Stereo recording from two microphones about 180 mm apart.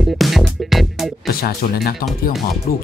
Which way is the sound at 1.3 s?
55° left (ahead or behind).